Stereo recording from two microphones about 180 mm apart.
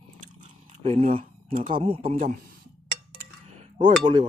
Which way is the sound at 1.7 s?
30° right (ahead or behind).